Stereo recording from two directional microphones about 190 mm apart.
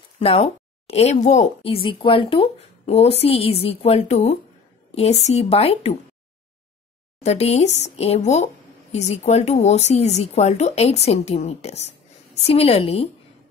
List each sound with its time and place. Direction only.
0.2 s speech: 30° left (ahead or behind)
7.2 s speech: 35° left (ahead or behind)